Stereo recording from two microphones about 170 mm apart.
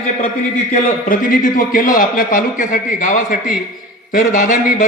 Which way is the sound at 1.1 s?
55° left (ahead or behind).